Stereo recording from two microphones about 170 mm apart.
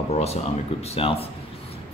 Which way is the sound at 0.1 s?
40° left (ahead or behind).